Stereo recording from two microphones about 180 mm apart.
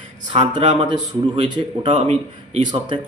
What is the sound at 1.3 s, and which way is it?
A man's voice, 35° right (ahead or behind).